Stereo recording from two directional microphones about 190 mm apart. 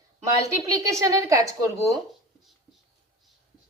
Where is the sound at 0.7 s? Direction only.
15° right (ahead or behind).